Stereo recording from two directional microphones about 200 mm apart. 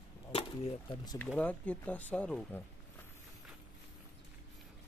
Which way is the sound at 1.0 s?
20° left (ahead or behind).